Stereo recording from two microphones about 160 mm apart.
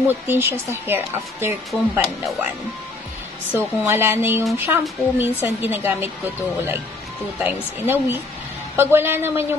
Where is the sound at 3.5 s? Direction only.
15° right (ahead or behind).